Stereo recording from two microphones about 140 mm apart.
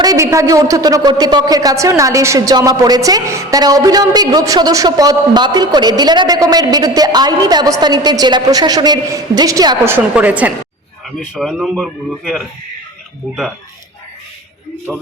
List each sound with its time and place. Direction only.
0.0 s a woman's voice: 25° right (ahead or behind)
9.9 s a woman's voice: 10° right (ahead or behind)
14.9 s a man's voice: centre (ahead or behind)